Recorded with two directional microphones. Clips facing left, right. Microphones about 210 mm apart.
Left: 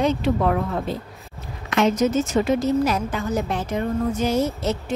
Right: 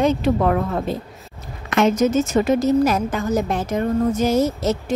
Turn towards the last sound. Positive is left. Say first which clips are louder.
# right 3 dB
turn(degrees=-40)  # may be behind; listen again after turning